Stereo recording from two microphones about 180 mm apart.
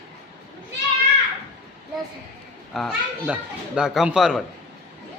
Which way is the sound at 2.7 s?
Centre (ahead or behind).